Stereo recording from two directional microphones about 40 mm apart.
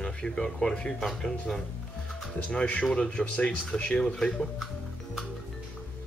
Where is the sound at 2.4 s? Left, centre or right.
Left.